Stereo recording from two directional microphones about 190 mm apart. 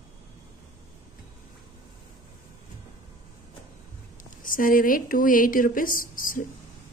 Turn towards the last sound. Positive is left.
turn(degrees=45)  # may be behind; listen again after turning